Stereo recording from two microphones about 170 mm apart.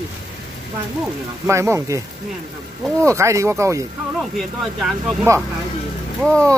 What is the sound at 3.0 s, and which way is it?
Speech, 15° right (ahead or behind).